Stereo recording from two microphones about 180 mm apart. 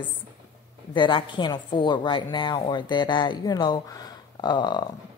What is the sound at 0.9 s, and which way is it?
A woman's voice, 25° left (ahead or behind).